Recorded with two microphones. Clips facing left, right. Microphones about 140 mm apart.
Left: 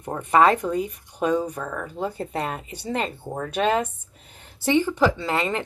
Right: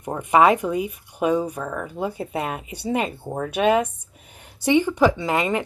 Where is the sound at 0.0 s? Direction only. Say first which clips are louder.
Right 1 dB; 10° right (ahead or behind).